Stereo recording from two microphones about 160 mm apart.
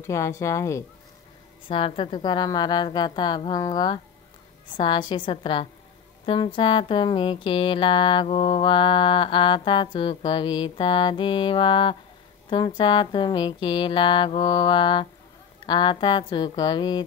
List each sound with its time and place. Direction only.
0.0 s speech: 20° left (ahead or behind)
1.7 s speech: 35° left (ahead or behind)